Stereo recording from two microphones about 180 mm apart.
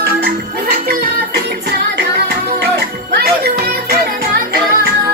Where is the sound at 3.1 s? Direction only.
60° right (ahead or behind).